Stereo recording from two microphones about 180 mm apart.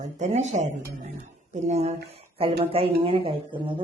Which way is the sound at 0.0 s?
40° right (ahead or behind).